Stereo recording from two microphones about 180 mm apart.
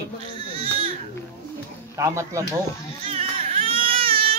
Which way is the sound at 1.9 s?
15° right (ahead or behind).